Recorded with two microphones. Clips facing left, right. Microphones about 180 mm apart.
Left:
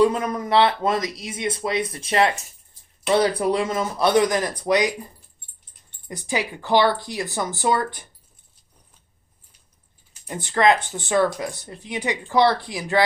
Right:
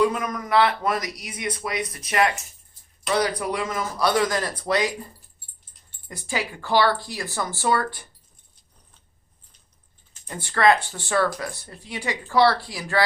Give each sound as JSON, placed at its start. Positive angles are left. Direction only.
{"t": 0.0, "sound": "speech", "side_deg": 30}
{"t": 6.1, "sound": "speech", "side_deg": 20}
{"t": 10.2, "sound": "speech", "side_deg": 20}